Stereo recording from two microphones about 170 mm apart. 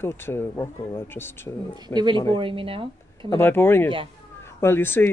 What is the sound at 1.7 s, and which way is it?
A man's voice, 25° right (ahead or behind).